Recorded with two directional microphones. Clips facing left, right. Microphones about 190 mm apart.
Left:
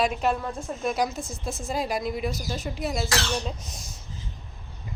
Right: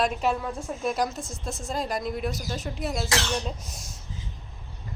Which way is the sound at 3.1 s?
20° right (ahead or behind).